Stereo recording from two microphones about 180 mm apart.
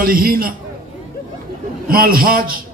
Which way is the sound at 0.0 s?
55° right (ahead or behind).